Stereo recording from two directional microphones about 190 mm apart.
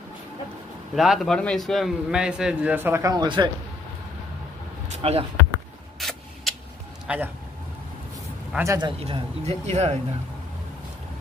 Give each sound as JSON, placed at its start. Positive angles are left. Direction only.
{"t": 0.9, "sound": "a man's voice", "side_deg": 0}
{"t": 4.8, "sound": "speech", "side_deg": -35}
{"t": 5.9, "sound": "a sound", "side_deg": 0}
{"t": 7.1, "sound": "a man's voice", "side_deg": -5}
{"t": 8.5, "sound": "speech", "side_deg": -20}